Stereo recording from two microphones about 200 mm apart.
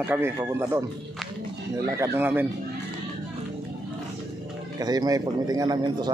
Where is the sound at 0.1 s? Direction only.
15° right (ahead or behind).